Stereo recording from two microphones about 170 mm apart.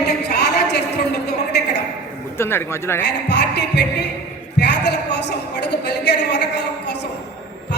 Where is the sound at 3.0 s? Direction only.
80° left.